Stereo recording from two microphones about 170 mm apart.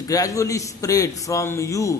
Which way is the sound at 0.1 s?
20° left (ahead or behind).